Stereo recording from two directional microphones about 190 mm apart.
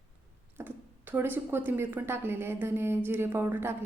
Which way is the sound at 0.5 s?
10° right (ahead or behind).